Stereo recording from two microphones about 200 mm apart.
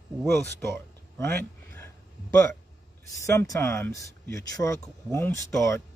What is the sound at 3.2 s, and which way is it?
Speech, 15° left (ahead or behind).